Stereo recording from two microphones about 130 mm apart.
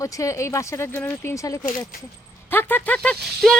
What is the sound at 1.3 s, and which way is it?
A woman's voice, 25° left (ahead or behind).